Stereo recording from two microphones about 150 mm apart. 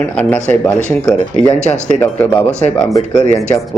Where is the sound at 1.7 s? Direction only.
10° left (ahead or behind).